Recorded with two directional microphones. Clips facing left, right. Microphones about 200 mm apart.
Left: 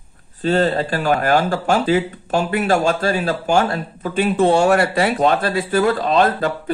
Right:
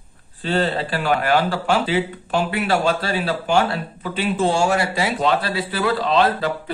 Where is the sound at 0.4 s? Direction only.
45° left (ahead or behind).